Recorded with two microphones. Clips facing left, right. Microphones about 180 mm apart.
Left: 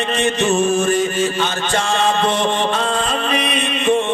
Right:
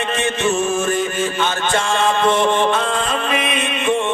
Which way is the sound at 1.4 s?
50° right (ahead or behind).